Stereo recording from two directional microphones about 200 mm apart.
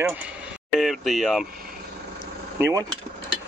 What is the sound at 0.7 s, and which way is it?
Speech, centre (ahead or behind).